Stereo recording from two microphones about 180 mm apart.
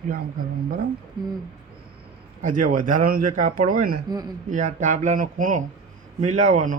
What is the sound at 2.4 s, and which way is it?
Speech, 45° right (ahead or behind).